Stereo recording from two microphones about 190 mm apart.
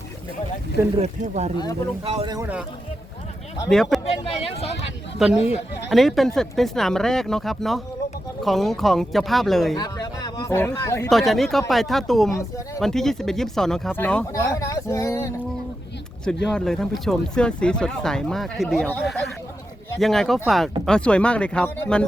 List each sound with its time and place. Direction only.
0.9 s speech: 35° right (ahead or behind)
2.3 s a man's voice: 10° right (ahead or behind)
3.7 s speech: centre (ahead or behind)
4.2 s speech: 30° left (ahead or behind)
5.9 s speech: centre (ahead or behind)
9.7 s a sound: 20° left (ahead or behind)
10.8 s speech: 15° left (ahead or behind)
11.1 s speech: centre (ahead or behind)
12.3 s speech: 15° left (ahead or behind)
12.8 s speech: centre (ahead or behind)
16.2 s speech: 5° left (ahead or behind)